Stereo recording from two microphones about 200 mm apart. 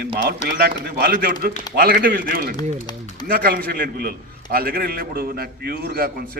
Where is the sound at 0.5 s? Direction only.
50° right (ahead or behind).